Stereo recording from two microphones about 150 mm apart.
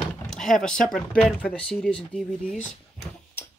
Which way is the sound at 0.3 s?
5° left (ahead or behind).